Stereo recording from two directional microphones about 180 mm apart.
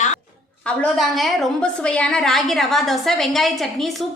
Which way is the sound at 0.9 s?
Centre (ahead or behind).